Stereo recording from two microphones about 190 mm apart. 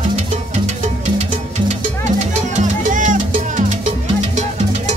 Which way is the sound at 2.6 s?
40° right (ahead or behind).